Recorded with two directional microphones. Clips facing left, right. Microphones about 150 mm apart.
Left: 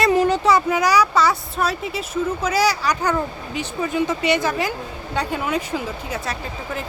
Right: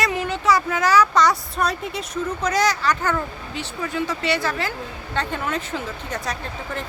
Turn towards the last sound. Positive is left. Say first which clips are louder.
# left 1 dB
turn(degrees=5)  # may be behind; listen again after turning